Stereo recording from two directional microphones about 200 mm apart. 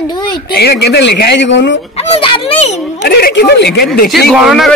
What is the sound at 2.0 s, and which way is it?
Speech, 25° left (ahead or behind).